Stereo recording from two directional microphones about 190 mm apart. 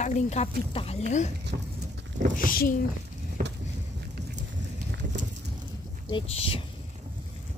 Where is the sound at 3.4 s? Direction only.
45° right (ahead or behind).